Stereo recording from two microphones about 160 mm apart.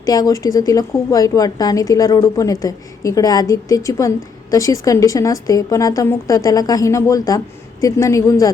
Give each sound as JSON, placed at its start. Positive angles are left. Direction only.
{"t": 0.0, "sound": "a woman's voice", "side_deg": 25}